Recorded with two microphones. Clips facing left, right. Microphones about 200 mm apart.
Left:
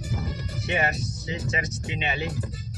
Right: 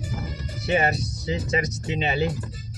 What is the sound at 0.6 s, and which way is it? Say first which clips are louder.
Speech: right 5 dB; 35° right (ahead or behind).